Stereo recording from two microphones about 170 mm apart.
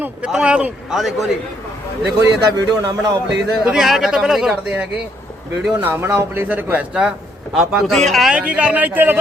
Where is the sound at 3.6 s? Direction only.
5° right (ahead or behind).